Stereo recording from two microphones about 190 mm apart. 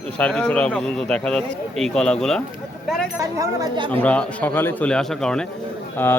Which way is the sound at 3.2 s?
20° right (ahead or behind).